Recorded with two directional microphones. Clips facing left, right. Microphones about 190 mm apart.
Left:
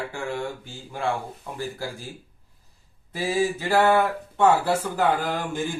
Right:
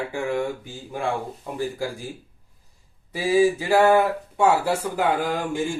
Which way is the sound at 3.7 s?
10° right (ahead or behind).